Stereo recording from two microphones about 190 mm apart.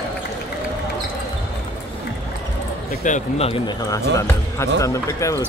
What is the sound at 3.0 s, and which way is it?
Speech, 40° left (ahead or behind).